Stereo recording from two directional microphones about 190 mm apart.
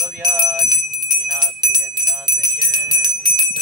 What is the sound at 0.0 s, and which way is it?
Jingle bell, 20° right (ahead or behind).